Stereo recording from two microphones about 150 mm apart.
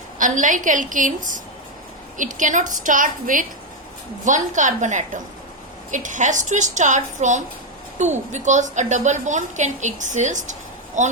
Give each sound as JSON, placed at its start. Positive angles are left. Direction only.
{"t": 0.2, "sound": "a woman's voice", "side_deg": -60}